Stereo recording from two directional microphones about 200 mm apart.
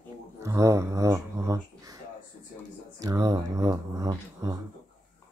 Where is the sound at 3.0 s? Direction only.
20° right (ahead or behind).